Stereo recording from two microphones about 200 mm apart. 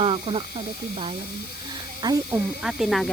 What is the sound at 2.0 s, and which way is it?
Speech, 20° right (ahead or behind).